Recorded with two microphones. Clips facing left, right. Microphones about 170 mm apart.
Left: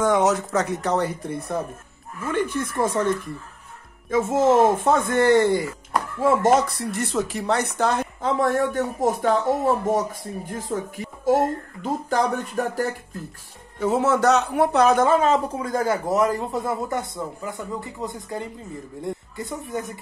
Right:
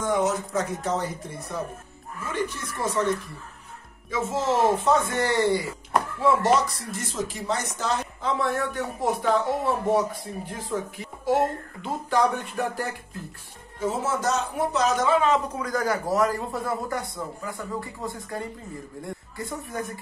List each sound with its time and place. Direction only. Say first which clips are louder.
0.0 s speech: left 5 dB; 85° left; by 3.1 s 55° left (ahead or behind)
4.1 s speech: left 7 dB; 50° left (ahead or behind)
10.4 s speech: left 2 dB; 45° left (ahead or behind)
13.7 s a man's voice: left 7 dB; 65° left (ahead or behind); by 19.8 s 20° left (ahead or behind)